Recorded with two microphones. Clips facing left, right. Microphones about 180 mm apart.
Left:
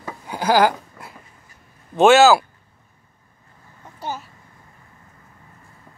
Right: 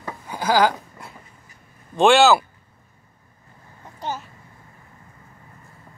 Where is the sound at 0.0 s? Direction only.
10° left (ahead or behind).